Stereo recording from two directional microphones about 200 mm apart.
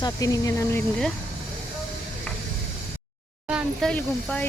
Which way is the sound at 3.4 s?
Centre (ahead or behind).